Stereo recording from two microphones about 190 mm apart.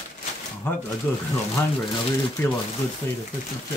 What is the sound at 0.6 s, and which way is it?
Speech, 10° left (ahead or behind).